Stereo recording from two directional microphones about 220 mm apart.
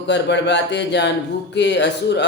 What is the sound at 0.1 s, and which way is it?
Speech, 50° left (ahead or behind).